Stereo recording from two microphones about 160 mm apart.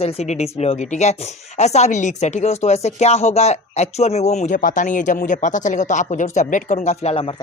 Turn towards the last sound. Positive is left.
turn(degrees=40)  # may be behind; listen again after turning